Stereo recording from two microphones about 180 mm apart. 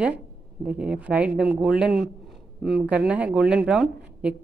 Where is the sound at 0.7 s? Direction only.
5° right (ahead or behind).